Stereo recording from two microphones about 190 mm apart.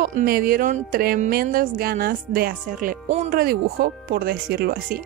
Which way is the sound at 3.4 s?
50° right (ahead or behind).